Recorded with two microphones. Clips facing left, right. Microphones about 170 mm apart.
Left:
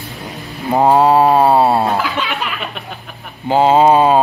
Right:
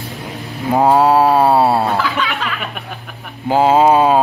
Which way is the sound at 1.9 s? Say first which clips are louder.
Even; 15° left (ahead or behind).